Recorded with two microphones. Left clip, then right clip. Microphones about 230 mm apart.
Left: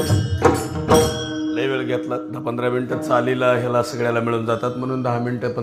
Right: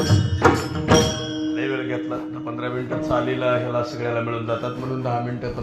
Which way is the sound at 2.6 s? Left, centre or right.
Left.